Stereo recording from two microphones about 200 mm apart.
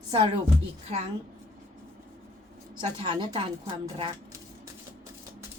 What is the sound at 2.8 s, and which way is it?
A woman's voice, 25° right (ahead or behind).